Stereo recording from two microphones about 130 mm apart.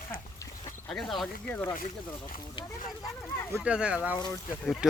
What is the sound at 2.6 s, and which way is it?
Speech, 40° left (ahead or behind).